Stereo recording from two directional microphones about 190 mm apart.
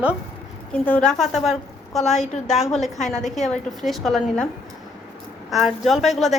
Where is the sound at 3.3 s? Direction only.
Centre (ahead or behind).